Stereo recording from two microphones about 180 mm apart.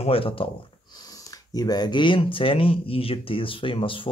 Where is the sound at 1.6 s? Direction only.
20° left (ahead or behind).